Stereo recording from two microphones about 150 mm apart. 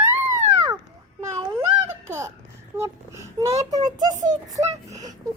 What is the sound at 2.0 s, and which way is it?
Babbling, 15° right (ahead or behind).